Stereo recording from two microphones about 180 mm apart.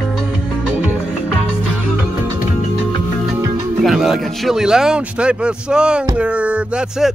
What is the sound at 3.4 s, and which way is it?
Music, 20° right (ahead or behind).